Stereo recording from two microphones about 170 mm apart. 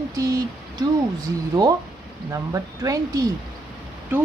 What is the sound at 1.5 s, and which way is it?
Speech, 20° right (ahead or behind).